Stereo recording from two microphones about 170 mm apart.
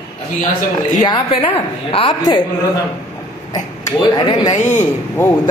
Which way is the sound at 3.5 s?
25° left (ahead or behind).